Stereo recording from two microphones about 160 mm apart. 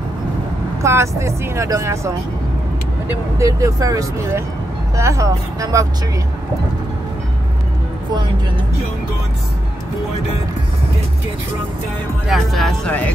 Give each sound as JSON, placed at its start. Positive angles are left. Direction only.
{"t": 0.8, "sound": "speech", "side_deg": -20}
{"t": 3.1, "sound": "speech", "side_deg": -20}
{"t": 12.3, "sound": "speech", "side_deg": 0}